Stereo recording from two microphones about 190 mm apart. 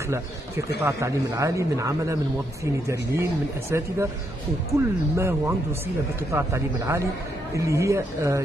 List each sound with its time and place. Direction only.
0.8 s speech: 15° right (ahead or behind)